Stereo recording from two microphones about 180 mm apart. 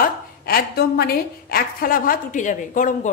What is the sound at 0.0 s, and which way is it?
A woman's voice, 55° left (ahead or behind).